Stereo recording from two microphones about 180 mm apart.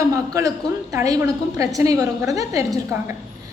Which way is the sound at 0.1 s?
20° right (ahead or behind).